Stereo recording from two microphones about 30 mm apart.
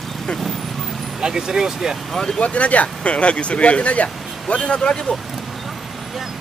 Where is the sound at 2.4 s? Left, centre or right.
Left.